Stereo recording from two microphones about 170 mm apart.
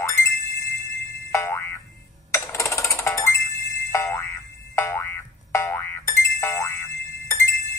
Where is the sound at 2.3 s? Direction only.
15° left (ahead or behind).